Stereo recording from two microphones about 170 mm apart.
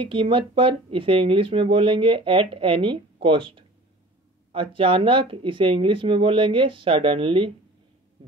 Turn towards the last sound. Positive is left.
turn(degrees=-30)  # may be behind; listen again after turning